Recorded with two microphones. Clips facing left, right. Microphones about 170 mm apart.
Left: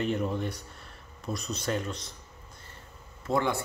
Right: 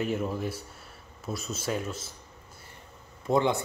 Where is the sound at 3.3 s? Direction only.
20° right (ahead or behind).